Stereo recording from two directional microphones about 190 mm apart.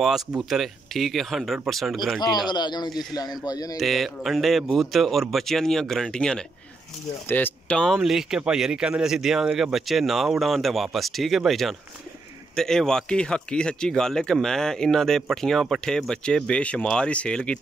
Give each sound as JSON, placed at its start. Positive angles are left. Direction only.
{"t": 0.0, "sound": "speech", "side_deg": 0}
{"t": 2.1, "sound": "a man's voice", "side_deg": 20}
{"t": 3.7, "sound": "speech", "side_deg": 0}